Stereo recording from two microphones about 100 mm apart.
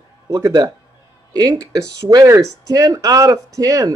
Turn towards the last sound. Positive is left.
turn(degrees=-35)  # may be behind; listen again after turning